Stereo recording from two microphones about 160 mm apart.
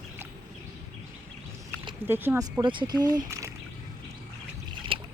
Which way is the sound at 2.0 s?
15° right (ahead or behind).